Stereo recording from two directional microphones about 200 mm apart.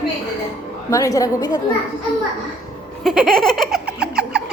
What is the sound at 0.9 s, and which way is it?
Speech, 15° left (ahead or behind).